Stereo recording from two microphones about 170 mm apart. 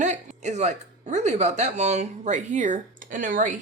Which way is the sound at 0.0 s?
45° right (ahead or behind).